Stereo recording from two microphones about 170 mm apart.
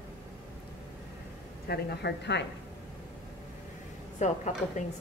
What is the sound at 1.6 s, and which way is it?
Speech, 70° left (ahead or behind).